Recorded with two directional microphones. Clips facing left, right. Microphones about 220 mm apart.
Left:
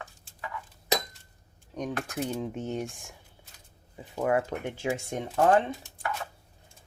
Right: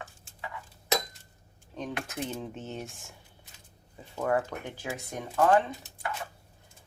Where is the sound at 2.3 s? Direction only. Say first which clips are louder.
Left 5 dB; 10° left (ahead or behind).